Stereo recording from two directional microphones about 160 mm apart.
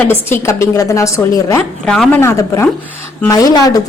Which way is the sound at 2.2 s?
15° left (ahead or behind).